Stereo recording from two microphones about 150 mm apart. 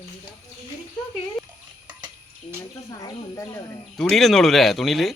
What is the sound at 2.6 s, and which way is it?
Speech, 20° left (ahead or behind).